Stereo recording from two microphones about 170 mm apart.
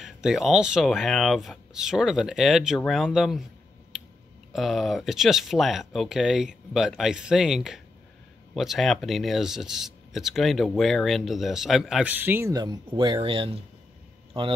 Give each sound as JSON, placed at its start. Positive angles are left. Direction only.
{"t": 0.0, "sound": "speech", "side_deg": -5}
{"t": 4.5, "sound": "speech", "side_deg": 0}